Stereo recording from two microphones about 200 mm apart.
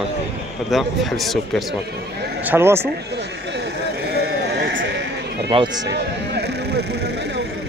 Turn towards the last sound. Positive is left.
turn(degrees=-25)  # may be behind; listen again after turning